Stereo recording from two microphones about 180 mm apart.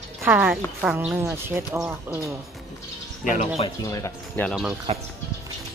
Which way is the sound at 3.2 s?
45° left (ahead or behind).